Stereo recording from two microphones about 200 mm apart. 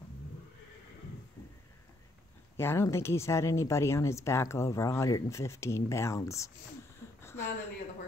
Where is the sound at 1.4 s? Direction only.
15° left (ahead or behind).